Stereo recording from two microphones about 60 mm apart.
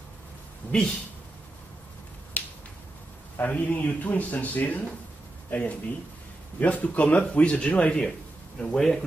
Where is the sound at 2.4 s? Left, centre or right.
Left.